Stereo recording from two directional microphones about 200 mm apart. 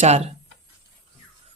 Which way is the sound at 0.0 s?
35° right (ahead or behind).